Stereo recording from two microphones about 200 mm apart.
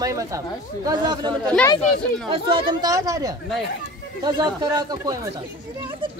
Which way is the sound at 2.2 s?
25° right (ahead or behind).